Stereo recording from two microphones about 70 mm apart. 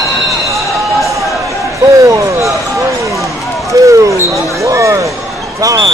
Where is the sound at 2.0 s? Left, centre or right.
Right.